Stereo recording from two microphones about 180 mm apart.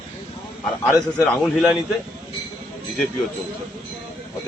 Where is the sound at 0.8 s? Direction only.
5° left (ahead or behind).